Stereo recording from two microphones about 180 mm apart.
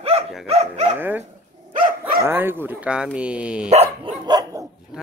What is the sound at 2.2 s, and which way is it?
Speech, 10° right (ahead or behind).